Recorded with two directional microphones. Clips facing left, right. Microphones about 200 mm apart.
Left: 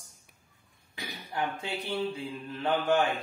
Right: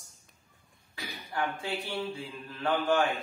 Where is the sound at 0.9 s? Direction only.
20° left (ahead or behind).